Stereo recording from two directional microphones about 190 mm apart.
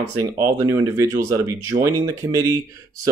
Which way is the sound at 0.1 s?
15° right (ahead or behind).